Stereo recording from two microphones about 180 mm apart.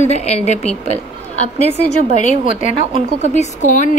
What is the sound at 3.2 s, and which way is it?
Speech, 40° left (ahead or behind).